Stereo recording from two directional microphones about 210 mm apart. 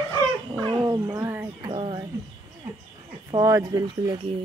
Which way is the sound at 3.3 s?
15° right (ahead or behind).